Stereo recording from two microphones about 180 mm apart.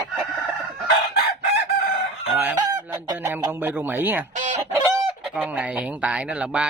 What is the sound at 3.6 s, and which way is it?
Speech, 10° right (ahead or behind).